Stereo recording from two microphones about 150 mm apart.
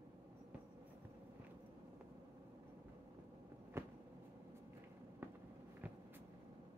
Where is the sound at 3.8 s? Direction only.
20° right (ahead or behind).